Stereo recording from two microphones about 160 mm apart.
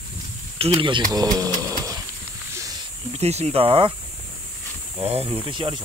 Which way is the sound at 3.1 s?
40° right (ahead or behind).